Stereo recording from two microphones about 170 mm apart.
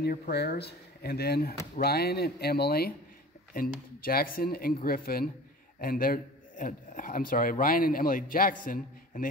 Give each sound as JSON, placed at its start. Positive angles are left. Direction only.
{"t": 0.0, "sound": "a man's voice", "side_deg": 70}